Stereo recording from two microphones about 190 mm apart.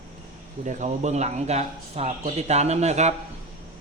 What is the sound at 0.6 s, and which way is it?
Speech, 40° right (ahead or behind).